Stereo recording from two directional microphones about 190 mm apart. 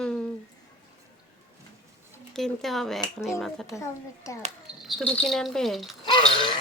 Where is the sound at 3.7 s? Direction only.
15° left (ahead or behind).